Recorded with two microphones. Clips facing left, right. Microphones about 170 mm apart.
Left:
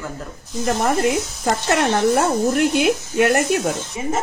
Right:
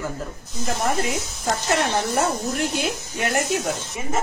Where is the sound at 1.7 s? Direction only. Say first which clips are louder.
Left 6 dB; 65° left (ahead or behind).